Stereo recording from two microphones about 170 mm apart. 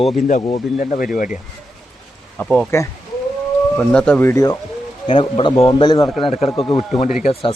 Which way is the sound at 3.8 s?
5° left (ahead or behind).